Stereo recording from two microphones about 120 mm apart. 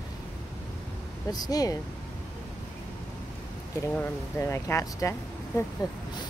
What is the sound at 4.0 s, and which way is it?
Speech, 20° left (ahead or behind).